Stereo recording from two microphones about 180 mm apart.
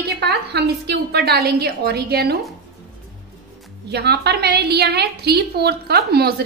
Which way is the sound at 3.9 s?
65° right (ahead or behind).